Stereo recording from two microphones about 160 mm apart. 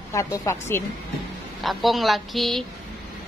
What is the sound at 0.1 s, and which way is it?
Speech, 20° left (ahead or behind).